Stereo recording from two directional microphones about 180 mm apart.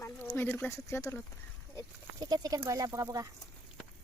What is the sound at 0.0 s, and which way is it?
Speech, 15° left (ahead or behind).